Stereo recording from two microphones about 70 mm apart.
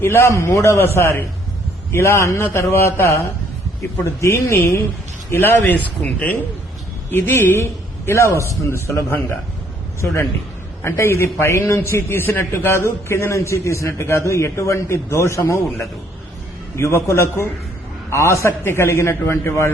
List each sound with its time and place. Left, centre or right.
0.0 s a man's voice: left
5.4 s a man's voice: left